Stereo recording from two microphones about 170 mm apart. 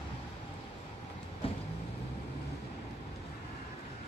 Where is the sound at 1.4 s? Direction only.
35° left (ahead or behind).